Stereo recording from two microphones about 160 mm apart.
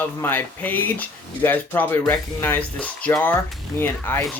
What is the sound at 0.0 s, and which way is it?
Speech, 10° left (ahead or behind).